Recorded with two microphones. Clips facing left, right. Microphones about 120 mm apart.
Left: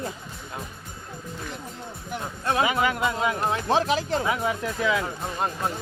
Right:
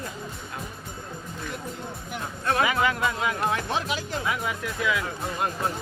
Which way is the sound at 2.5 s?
25° left (ahead or behind).